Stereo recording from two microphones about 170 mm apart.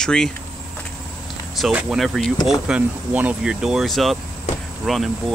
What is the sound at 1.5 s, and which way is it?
Speech, centre (ahead or behind).